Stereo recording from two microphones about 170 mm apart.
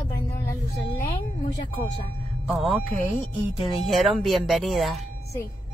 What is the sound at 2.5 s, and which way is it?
Speech, centre (ahead or behind).